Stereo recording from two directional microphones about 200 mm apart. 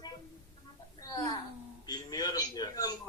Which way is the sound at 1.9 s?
20° left (ahead or behind).